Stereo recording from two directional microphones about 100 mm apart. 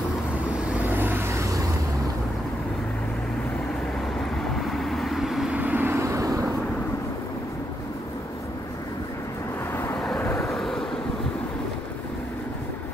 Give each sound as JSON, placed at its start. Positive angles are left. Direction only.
{"t": 0.7, "sound": "vehicle", "side_deg": -20}
{"t": 4.8, "sound": "vehicle", "side_deg": 0}
{"t": 5.6, "sound": "vehicle", "side_deg": -15}
{"t": 10.0, "sound": "vehicle", "side_deg": 20}
{"t": 10.5, "sound": "vehicle", "side_deg": 5}